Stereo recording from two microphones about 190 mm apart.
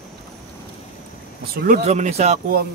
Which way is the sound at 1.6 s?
40° right (ahead or behind).